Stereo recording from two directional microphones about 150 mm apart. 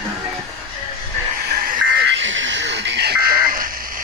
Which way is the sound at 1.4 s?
65° right (ahead or behind).